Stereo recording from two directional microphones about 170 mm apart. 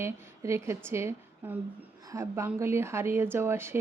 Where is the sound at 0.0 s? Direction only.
15° right (ahead or behind).